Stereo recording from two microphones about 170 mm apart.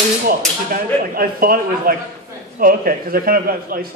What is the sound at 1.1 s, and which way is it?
Speech, 60° right (ahead or behind).